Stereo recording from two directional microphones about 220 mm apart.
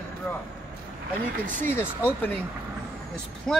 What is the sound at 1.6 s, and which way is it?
Speech, 10° left (ahead or behind).